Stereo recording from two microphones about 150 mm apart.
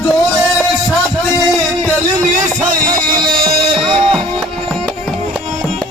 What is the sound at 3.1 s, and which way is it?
Music, 30° right (ahead or behind).